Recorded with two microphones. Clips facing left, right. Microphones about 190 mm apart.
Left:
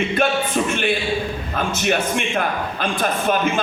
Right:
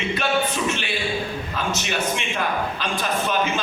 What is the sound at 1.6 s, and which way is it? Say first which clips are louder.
A man's voice: left 6 dB; 55° left (ahead or behind).